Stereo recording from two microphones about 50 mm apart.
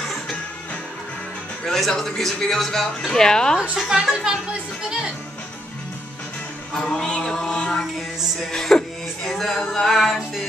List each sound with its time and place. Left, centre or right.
1.7 s music: centre
3.7 s a woman's voice: centre
6.7 s music: centre